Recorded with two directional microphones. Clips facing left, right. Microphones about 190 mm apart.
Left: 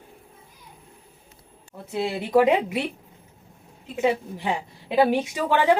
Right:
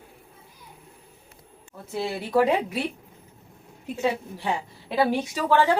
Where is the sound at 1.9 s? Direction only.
20° left (ahead or behind).